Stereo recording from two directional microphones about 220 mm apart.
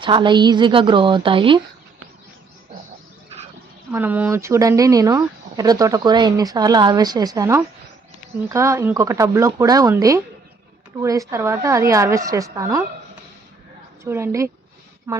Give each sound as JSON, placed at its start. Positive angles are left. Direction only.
{"t": 0.0, "sound": "a woman's voice", "side_deg": -20}
{"t": 3.9, "sound": "speech", "side_deg": -10}
{"t": 14.0, "sound": "speech", "side_deg": -10}